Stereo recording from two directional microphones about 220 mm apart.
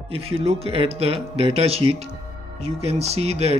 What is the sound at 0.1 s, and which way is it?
Speech, 25° right (ahead or behind).